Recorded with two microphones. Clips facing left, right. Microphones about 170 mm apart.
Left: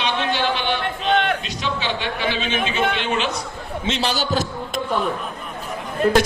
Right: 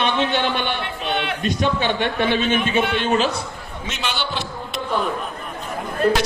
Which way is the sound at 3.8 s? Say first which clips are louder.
Left 4 dB; 35° left (ahead or behind).